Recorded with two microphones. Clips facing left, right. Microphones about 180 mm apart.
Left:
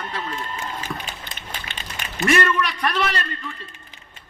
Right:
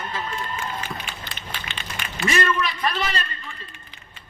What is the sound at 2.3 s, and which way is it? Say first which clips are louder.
A man's voice: left 3 dB; 65° left (ahead or behind).